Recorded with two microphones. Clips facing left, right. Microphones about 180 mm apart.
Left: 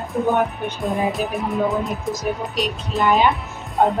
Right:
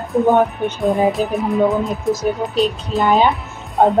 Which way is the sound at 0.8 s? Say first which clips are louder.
Right 6 dB; centre (ahead or behind).